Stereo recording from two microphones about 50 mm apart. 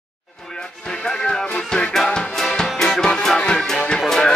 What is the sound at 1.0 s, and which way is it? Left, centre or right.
Music, centre.